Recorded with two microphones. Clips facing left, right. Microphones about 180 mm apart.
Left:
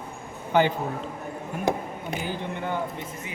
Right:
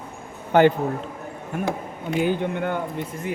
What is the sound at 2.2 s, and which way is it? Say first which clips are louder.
Speech: right 10 dB; 55° right (ahead or behind).